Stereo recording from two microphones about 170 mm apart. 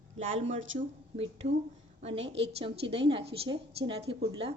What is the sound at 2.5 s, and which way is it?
A woman's voice, 35° right (ahead or behind).